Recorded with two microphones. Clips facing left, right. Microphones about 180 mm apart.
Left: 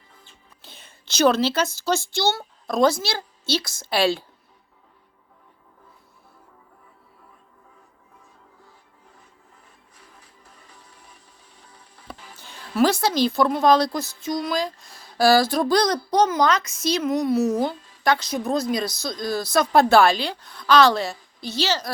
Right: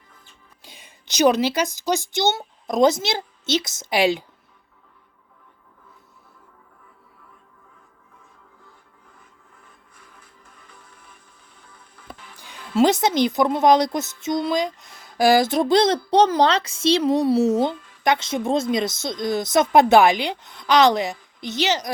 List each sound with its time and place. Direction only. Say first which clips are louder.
0.6 s a woman's voice: right 1 dB; 10° right (ahead or behind)
12.7 s speech: right 2 dB; 20° right (ahead or behind)